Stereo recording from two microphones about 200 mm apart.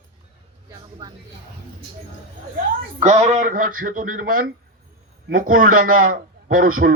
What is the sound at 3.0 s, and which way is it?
Speech, 35° right (ahead or behind).